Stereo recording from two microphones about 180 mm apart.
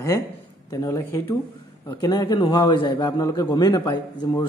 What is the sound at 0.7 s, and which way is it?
A man's voice, 15° left (ahead or behind).